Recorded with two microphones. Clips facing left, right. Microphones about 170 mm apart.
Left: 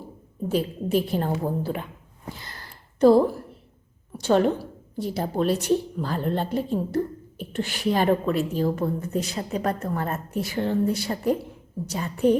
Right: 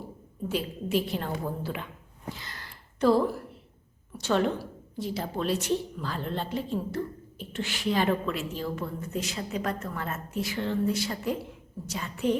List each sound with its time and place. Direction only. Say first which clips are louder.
0.5 s a woman's voice: left 5 dB; 40° left (ahead or behind)
3.0 s a woman's voice: left 7 dB; 45° left (ahead or behind)
4.3 s a woman's voice: left 6 dB; 40° left (ahead or behind)